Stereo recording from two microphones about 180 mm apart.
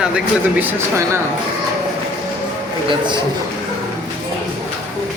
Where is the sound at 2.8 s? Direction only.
25° right (ahead or behind).